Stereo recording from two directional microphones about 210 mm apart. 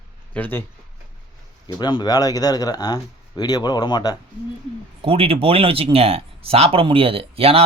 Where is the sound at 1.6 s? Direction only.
20° left (ahead or behind).